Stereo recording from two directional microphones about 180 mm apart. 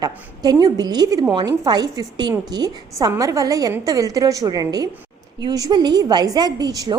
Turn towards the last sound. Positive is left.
turn(degrees=-20)  # may be behind; listen again after turning